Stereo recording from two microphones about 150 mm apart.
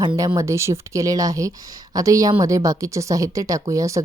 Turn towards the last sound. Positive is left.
turn(degrees=-20)  # may be behind; listen again after turning